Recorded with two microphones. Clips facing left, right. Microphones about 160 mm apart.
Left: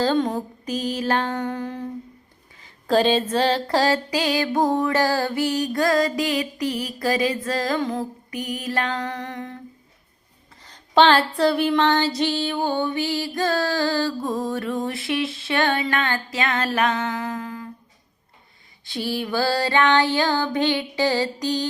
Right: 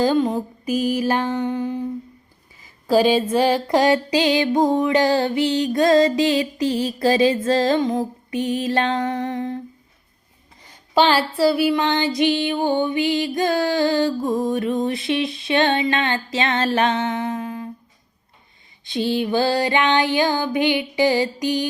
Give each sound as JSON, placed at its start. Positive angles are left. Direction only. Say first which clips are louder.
{"t": 0.0, "sound": "female singing", "louder": "right 3 dB", "side_deg": -5}
{"t": 2.8, "sound": "music", "louder": "right 2 dB", "side_deg": -10}
{"t": 10.6, "sound": "female singing", "louder": "left 1 dB", "side_deg": -10}
{"t": 18.9, "sound": "female singing", "louder": "right 5 dB", "side_deg": -20}